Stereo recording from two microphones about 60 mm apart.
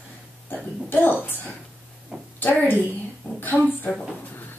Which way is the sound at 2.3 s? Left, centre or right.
Left.